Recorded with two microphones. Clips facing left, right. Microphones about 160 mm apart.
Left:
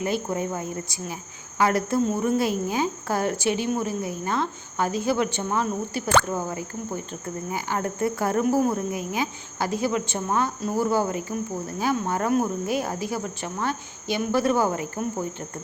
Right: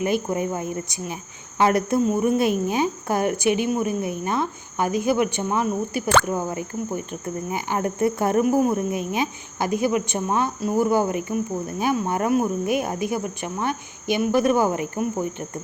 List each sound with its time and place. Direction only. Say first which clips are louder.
0.0 s speech: right 3 dB; 15° right (ahead or behind)